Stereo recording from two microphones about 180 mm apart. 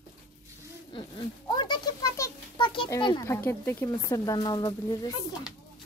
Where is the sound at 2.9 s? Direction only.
25° left (ahead or behind).